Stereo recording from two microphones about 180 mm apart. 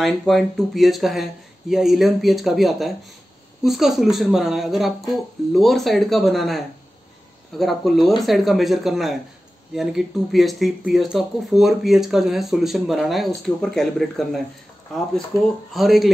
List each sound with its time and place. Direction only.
0.0 s speech: centre (ahead or behind)
15.3 s speech: 15° left (ahead or behind)
15.7 s speech: centre (ahead or behind)